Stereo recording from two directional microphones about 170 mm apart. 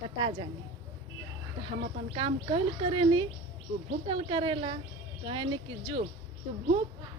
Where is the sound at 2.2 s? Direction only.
30° right (ahead or behind).